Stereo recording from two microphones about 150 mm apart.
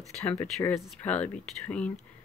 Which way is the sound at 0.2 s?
15° left (ahead or behind).